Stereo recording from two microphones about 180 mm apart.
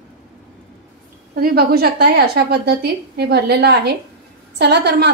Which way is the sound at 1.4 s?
60° right (ahead or behind).